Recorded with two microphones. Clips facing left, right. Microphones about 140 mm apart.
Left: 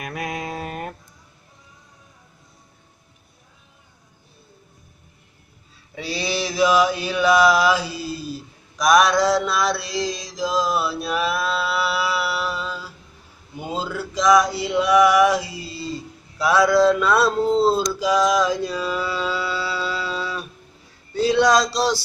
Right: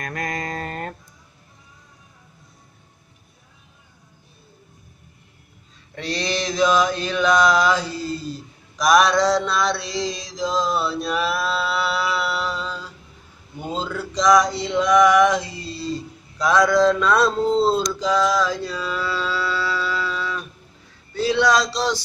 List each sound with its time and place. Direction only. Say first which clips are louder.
0.0 s music: even; 10° left (ahead or behind)
5.9 s mantra: even; 5° left (ahead or behind)
13.6 s male singing: even; 5° left (ahead or behind)
17.8 s mantra: left 1 dB; 10° left (ahead or behind)
21.1 s a sound: left 2 dB; 15° left (ahead or behind)
21.7 s music: left 2 dB; 10° left (ahead or behind)